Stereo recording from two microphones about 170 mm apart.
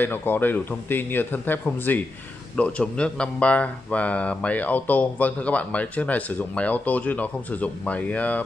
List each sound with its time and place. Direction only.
0.0 s speech: 10° left (ahead or behind)